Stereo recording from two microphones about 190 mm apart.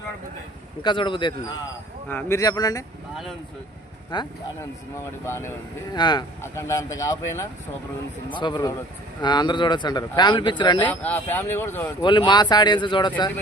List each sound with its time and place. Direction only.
0.8 s speech: 25° left (ahead or behind)
2.0 s speech: 10° left (ahead or behind)
4.1 s speech: 25° left (ahead or behind)
5.2 s speech: 15° left (ahead or behind)
10.8 s speech: 10° left (ahead or behind)
12.0 s speech: 25° left (ahead or behind)